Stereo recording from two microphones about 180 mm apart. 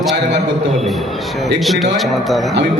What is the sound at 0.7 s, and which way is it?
A man's voice, centre (ahead or behind).